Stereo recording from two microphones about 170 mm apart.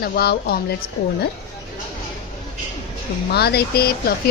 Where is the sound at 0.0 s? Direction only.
65° left (ahead or behind).